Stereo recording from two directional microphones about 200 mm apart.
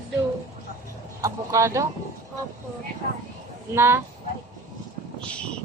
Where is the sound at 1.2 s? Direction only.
15° right (ahead or behind).